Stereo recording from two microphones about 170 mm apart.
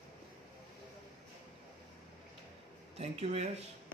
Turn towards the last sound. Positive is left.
turn(degrees=-40)  # may be behind; listen again after turning